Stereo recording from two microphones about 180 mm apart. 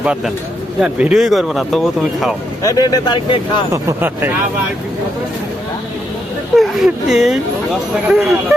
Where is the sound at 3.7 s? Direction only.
15° right (ahead or behind).